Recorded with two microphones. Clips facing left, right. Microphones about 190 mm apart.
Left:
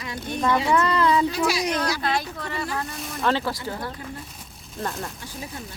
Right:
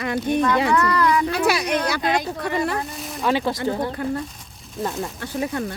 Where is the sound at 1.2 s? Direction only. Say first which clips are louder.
Right 2 dB; 60° right (ahead or behind).